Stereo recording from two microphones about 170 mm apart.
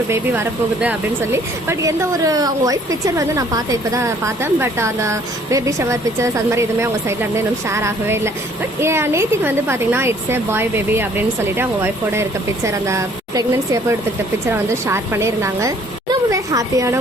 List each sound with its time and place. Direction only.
0.1 s speech: 10° right (ahead or behind)
14.5 s speech: 15° right (ahead or behind)